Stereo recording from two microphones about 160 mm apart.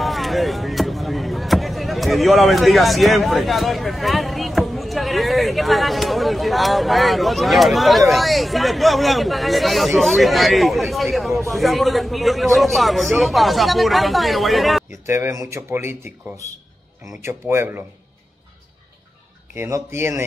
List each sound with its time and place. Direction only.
0.0 s speech: centre (ahead or behind)
15.0 s speech: 15° right (ahead or behind)
17.2 s speech: 15° right (ahead or behind)
19.5 s speech: 15° right (ahead or behind)